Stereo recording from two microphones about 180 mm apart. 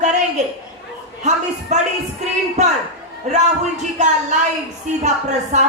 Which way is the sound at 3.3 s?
40° right (ahead or behind).